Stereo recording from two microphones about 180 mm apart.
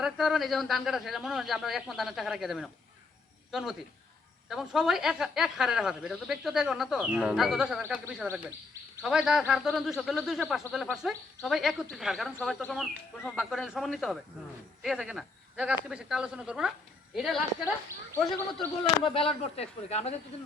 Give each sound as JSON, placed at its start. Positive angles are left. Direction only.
{"t": 0.0, "sound": "speech", "side_deg": 0}
{"t": 19.0, "sound": "speech", "side_deg": 30}